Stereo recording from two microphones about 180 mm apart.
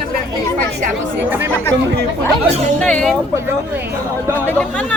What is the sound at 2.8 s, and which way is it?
Speech, 5° left (ahead or behind).